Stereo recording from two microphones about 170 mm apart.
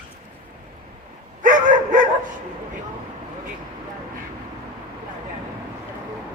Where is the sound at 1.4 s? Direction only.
50° right (ahead or behind).